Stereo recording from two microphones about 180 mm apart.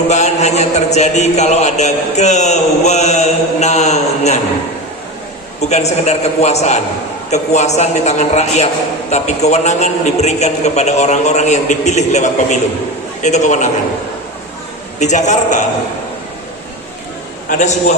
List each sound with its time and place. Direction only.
0.1 s a man's voice: 40° left (ahead or behind)
5.5 s a man's voice: 40° left (ahead or behind)
14.9 s a man's voice: 40° left (ahead or behind)
17.5 s a man's voice: 40° left (ahead or behind)